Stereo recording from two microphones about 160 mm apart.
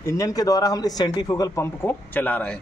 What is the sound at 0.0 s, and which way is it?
A man's voice, 20° left (ahead or behind).